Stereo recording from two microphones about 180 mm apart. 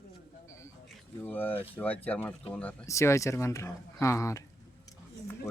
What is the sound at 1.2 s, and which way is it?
A man's voice, 10° left (ahead or behind).